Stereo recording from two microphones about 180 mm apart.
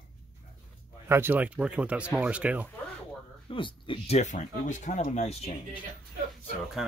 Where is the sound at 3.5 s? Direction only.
30° left (ahead or behind).